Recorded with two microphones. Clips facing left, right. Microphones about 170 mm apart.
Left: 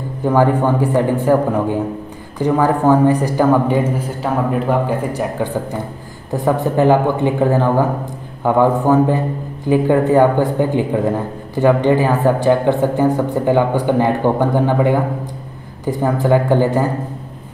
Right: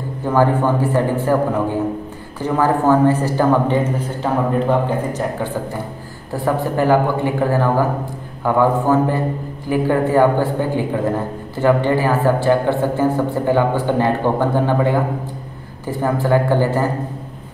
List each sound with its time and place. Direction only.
0.3 s speech: 15° left (ahead or behind)
2.3 s speech: 15° left (ahead or behind)